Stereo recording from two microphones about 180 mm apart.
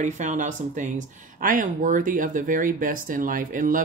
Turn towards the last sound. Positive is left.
turn(degrees=-50)  # may be behind; listen again after turning